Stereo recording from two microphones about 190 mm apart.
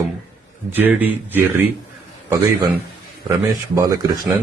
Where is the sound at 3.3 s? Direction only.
20° right (ahead or behind).